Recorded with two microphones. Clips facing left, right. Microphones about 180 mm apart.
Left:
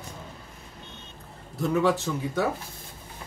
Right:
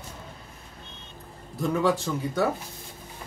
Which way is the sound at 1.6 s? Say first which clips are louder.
Left 1 dB; centre (ahead or behind).